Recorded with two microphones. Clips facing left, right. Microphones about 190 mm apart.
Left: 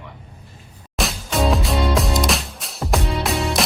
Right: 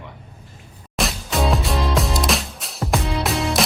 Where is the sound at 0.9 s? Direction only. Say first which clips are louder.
Even; centre (ahead or behind).